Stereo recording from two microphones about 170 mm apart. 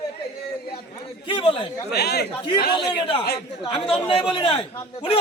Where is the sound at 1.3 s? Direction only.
30° left (ahead or behind).